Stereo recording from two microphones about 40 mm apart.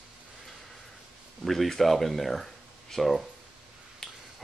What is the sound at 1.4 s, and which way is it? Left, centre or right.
Speech, centre.